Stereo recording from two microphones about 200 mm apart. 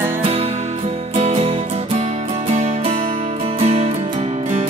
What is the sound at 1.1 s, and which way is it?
Music, 30° right (ahead or behind).